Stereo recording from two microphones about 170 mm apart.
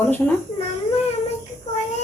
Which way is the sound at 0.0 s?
10° left (ahead or behind).